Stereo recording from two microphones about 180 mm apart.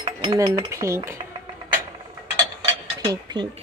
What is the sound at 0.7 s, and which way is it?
Cutlery, 15° right (ahead or behind).